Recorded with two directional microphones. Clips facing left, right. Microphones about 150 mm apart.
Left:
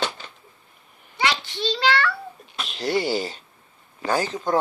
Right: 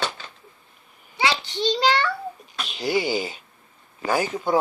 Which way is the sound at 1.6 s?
15° right (ahead or behind).